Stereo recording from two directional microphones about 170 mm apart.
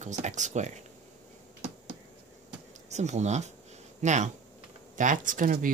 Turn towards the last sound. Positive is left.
turn(degrees=-50)  # may be behind; listen again after turning